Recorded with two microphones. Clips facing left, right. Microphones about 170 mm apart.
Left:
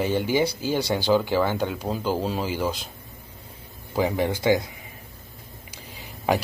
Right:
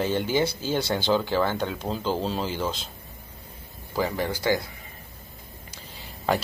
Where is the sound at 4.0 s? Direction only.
20° left (ahead or behind).